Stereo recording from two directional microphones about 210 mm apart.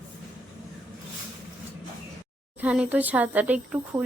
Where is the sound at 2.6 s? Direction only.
5° right (ahead or behind).